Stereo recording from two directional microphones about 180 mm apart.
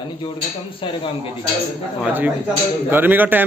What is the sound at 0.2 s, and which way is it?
A man's voice, 30° left (ahead or behind).